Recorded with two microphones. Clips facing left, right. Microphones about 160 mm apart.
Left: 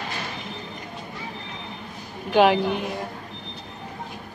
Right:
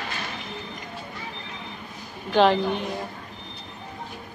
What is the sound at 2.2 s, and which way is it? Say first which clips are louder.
Speech: left 1 dB; 10° left (ahead or behind).